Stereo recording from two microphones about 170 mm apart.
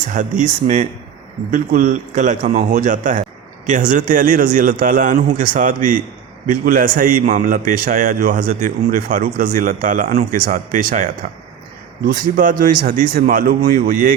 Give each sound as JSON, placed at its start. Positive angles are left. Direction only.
{"t": 0.1, "sound": "a man's voice", "side_deg": -50}